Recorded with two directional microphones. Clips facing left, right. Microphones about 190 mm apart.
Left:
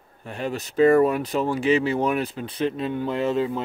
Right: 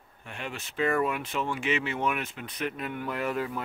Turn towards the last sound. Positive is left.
turn(degrees=25)  # may be behind; listen again after turning